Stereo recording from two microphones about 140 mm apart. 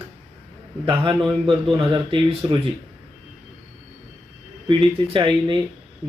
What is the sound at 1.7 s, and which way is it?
Speech, 35° right (ahead or behind).